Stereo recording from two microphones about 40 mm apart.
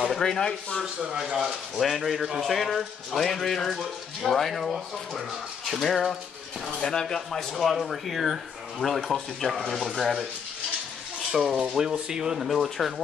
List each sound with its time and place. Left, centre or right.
0.2 s speech: centre
1.0 s speech: centre
1.8 s speech: centre
6.8 s speech: centre
11.3 s speech: centre
12.4 s speech: centre